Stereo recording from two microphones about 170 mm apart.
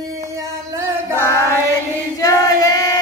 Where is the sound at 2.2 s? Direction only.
20° left (ahead or behind).